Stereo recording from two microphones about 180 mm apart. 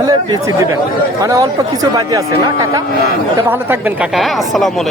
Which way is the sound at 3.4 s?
10° right (ahead or behind).